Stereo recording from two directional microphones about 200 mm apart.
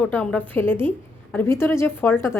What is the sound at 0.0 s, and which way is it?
A woman's voice, 5° left (ahead or behind).